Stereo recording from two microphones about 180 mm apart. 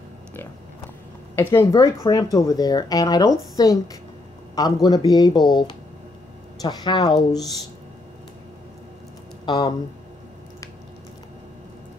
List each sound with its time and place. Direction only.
1.3 s speech: 15° left (ahead or behind)
9.5 s speech: 25° left (ahead or behind)